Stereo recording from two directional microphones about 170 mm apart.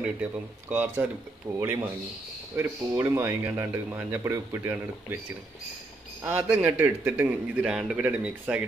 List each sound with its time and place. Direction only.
0.0 s a man's voice: 10° right (ahead or behind)
3.0 s a man's voice: 15° right (ahead or behind)
6.2 s a man's voice: 10° right (ahead or behind)